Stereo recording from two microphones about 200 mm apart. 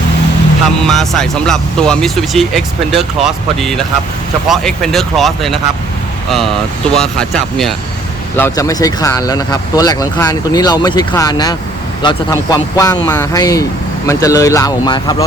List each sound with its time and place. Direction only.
0.9 s speech: centre (ahead or behind)
8.4 s speech: 15° left (ahead or behind)